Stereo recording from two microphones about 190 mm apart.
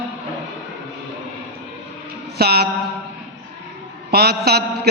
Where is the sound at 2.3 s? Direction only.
55° right (ahead or behind).